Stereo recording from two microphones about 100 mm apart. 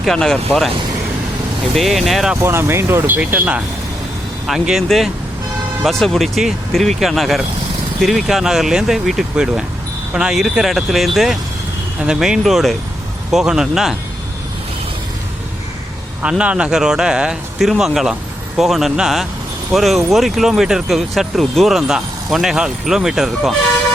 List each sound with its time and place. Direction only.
0.0 s speech: 5° left (ahead or behind)
1.7 s speech: centre (ahead or behind)
2.3 s speech: 25° right (ahead or behind)
4.4 s speech: 5° right (ahead or behind)
16.4 s speech: 10° right (ahead or behind)